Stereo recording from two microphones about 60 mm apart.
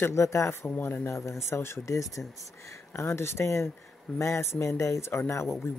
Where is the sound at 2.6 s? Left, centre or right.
Left.